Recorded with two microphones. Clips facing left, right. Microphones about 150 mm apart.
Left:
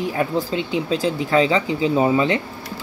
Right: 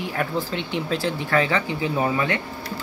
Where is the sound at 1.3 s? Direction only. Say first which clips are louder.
Left 4 dB; 20° left (ahead or behind).